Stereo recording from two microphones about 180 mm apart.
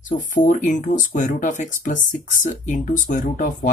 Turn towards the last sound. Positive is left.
turn(degrees=50)  # may be behind; listen again after turning